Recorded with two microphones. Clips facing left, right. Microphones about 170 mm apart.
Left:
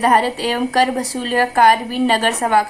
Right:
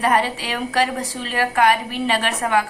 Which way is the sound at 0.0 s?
40° left (ahead or behind).